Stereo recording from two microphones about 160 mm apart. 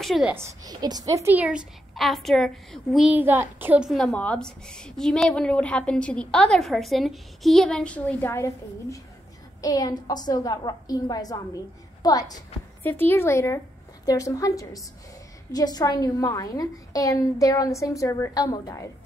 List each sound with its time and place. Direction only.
0.0 s a woman's voice: centre (ahead or behind)
0.3 s a woman's voice: 15° right (ahead or behind)
3.9 s a woman's voice: 5° left (ahead or behind); by 12.4 s 25° left (ahead or behind)
12.8 s a woman's voice: 15° left (ahead or behind)